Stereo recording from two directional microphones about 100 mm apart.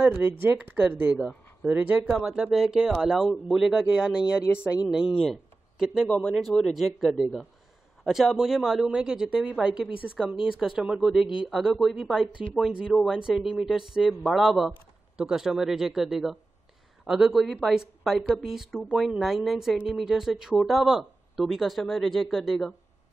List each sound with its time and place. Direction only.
0.0 s speech: 20° right (ahead or behind); by 5.1 s 5° right (ahead or behind)
5.2 s a sound: centre (ahead or behind)
6.0 s speech: 10° left (ahead or behind)